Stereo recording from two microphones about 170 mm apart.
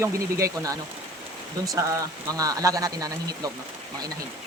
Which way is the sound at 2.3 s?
20° right (ahead or behind).